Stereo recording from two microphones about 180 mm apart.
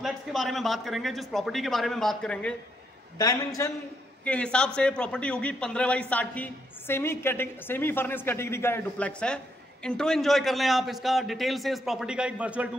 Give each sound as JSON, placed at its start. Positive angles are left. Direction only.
{"t": 0.0, "sound": "a man's voice", "side_deg": 0}
{"t": 3.2, "sound": "a man's voice", "side_deg": 20}
{"t": 4.2, "sound": "a man's voice", "side_deg": 5}